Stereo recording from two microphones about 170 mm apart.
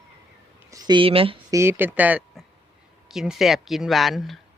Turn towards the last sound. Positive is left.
turn(degrees=0)  # may be behind; listen again after turning